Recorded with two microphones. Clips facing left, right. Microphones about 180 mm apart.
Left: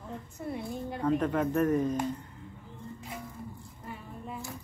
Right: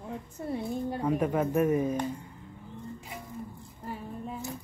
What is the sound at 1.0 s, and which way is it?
Speech, 10° right (ahead or behind).